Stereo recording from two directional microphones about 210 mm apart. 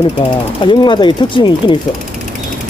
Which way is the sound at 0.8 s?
25° left (ahead or behind).